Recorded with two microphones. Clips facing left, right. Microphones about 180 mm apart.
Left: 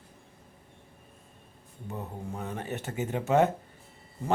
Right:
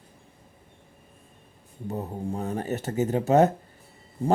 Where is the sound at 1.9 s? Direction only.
35° right (ahead or behind).